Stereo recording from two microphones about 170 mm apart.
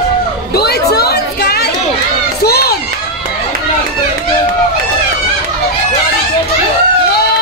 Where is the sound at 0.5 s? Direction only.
70° left (ahead or behind).